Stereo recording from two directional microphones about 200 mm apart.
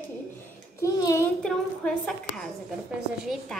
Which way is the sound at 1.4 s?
5° left (ahead or behind).